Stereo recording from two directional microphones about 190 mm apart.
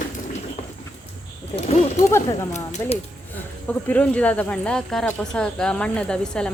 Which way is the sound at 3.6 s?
10° left (ahead or behind).